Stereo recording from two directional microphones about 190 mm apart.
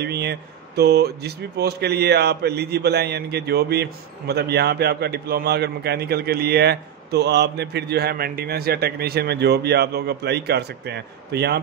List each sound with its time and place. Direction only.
0.0 s speech: 60° right (ahead or behind)